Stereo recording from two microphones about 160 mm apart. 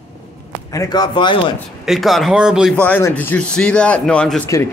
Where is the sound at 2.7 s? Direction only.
10° left (ahead or behind).